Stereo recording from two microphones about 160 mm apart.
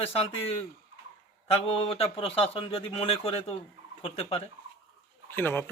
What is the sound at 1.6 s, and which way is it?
A man's voice, 35° left (ahead or behind).